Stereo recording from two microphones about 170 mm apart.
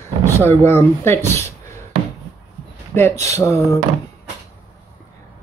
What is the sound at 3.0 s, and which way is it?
Speech, 15° left (ahead or behind).